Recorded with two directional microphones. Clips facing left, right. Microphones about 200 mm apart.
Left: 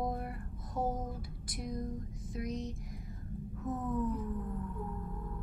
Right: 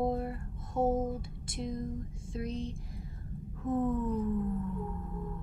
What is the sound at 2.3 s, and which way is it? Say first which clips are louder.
A woman's voice: right 2 dB; 30° right (ahead or behind).